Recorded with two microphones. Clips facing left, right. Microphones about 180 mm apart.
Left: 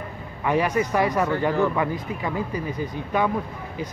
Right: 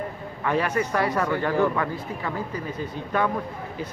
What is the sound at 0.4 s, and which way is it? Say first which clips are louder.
Speech: left 2 dB; 15° left (ahead or behind).